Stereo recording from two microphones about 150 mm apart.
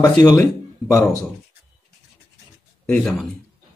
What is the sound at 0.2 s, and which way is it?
Speech, 25° left (ahead or behind).